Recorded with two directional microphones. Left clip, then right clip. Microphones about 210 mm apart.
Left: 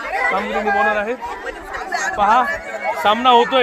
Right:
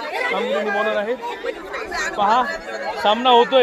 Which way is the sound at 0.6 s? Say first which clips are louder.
Left 4 dB; 40° left (ahead or behind).